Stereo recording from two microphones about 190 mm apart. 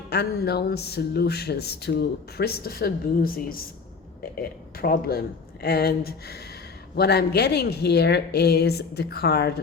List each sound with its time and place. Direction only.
0.1 s a man's voice: 55° left (ahead or behind)